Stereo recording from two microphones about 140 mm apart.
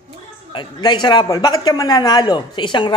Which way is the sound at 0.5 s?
35° left (ahead or behind).